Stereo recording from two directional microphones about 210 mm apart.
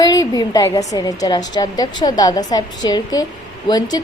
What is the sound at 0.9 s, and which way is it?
A woman's voice, 20° left (ahead or behind).